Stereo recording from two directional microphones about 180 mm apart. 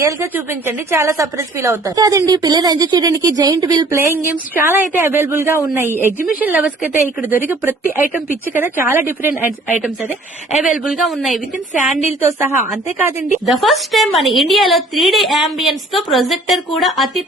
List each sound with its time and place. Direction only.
0.0 s a woman's voice: 15° right (ahead or behind)
10.6 s a woman's voice: 5° right (ahead or behind)
12.2 s speech: 15° right (ahead or behind)
13.4 s a woman's voice: centre (ahead or behind)